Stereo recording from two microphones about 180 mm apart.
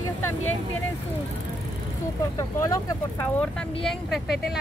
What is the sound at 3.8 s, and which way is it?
Speech, centre (ahead or behind).